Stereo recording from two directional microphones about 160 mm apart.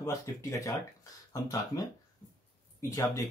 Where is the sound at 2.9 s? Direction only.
20° left (ahead or behind).